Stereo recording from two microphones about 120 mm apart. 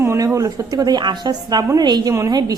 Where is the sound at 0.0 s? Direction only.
20° right (ahead or behind).